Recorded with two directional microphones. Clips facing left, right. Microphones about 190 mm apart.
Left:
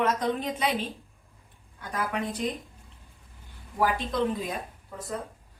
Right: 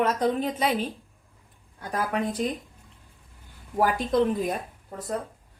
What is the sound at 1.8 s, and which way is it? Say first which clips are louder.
Speech: right 3 dB; 35° right (ahead or behind).